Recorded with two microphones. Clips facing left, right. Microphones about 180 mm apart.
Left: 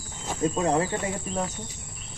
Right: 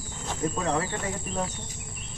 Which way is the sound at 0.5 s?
25° left (ahead or behind).